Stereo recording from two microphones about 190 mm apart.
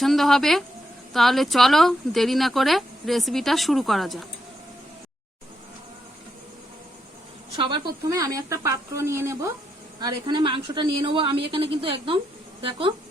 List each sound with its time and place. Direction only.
0.0 s speech: centre (ahead or behind)
7.5 s speech: 25° right (ahead or behind)